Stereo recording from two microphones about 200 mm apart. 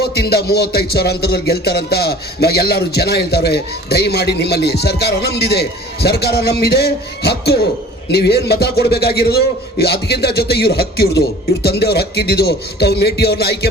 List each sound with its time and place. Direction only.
0.0 s music: 55° left (ahead or behind)